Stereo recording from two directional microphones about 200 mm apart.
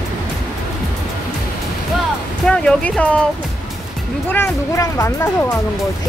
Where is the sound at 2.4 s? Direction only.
5° left (ahead or behind).